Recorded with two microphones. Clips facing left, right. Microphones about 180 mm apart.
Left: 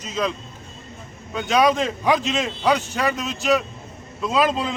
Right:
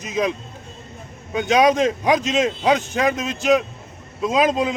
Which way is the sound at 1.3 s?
20° right (ahead or behind).